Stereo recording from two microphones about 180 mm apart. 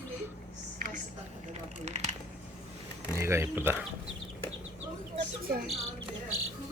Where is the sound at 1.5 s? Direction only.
40° right (ahead or behind).